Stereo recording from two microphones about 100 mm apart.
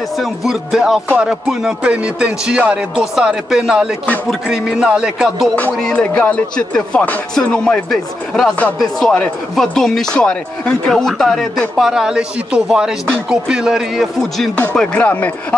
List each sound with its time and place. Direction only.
0.2 s speech: 5° right (ahead or behind)
5.9 s speech: 15° left (ahead or behind)
11.9 s speech: 5° right (ahead or behind)
14.6 s speech: 15° left (ahead or behind)